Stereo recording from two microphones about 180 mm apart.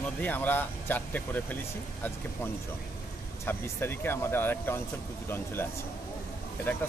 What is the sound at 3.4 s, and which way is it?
Speech, 10° left (ahead or behind).